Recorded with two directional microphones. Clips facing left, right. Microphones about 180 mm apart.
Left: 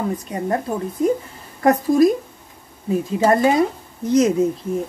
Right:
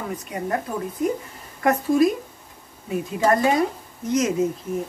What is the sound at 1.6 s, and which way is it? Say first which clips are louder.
Speech: left 4 dB; 35° left (ahead or behind).